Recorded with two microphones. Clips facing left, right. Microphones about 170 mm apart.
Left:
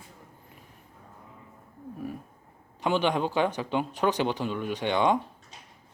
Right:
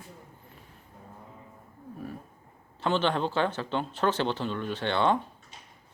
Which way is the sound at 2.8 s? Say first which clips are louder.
Left 1 dB; 15° left (ahead or behind).